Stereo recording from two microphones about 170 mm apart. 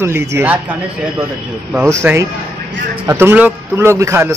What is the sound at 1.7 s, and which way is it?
A man's voice, 15° right (ahead or behind).